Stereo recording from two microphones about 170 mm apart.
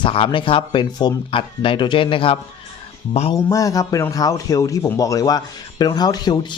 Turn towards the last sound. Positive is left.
turn(degrees=25)  # may be behind; listen again after turning